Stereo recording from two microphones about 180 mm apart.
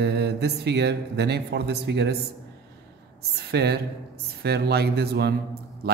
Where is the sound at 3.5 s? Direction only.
65° right (ahead or behind).